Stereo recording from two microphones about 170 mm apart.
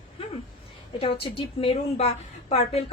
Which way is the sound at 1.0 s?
35° left (ahead or behind).